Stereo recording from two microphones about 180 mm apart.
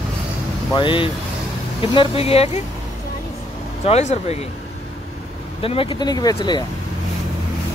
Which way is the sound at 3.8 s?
35° left (ahead or behind).